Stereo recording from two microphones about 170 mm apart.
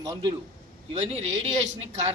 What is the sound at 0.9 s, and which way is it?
Speech, 40° right (ahead or behind).